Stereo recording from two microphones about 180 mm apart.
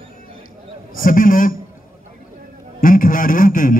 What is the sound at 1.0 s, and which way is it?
Speech, 50° left (ahead or behind).